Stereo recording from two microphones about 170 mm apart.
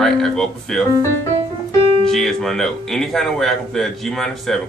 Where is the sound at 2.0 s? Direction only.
5° left (ahead or behind).